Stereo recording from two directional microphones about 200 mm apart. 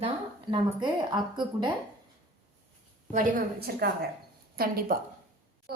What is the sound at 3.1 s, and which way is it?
A woman's voice, 45° right (ahead or behind).